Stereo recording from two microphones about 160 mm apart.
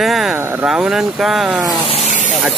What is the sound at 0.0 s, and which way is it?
Speech, centre (ahead or behind).